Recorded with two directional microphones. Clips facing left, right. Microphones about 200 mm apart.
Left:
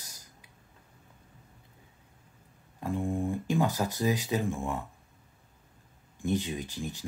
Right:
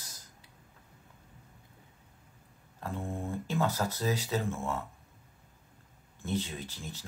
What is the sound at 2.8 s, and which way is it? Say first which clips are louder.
Speech: left 6 dB; 15° left (ahead or behind).